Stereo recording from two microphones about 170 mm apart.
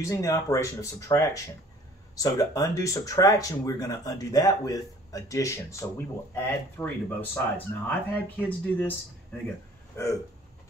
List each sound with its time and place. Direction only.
0.0 s speech: 20° left (ahead or behind)
9.9 s speech: 15° left (ahead or behind)